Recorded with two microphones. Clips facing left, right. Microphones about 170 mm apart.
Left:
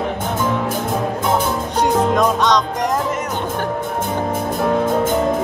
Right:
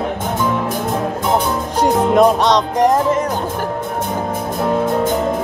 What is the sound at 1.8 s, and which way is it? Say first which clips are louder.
Music: right 4 dB; 30° right (ahead or behind).